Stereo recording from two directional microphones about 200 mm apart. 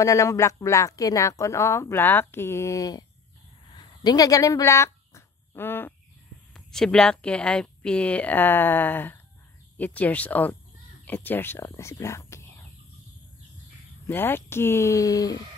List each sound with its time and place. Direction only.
0.0 s a woman's voice: 15° left (ahead or behind)
3.7 s a sound: 20° left (ahead or behind)
6.5 s a woman's voice: centre (ahead or behind)
14.0 s a woman's voice: 10° left (ahead or behind)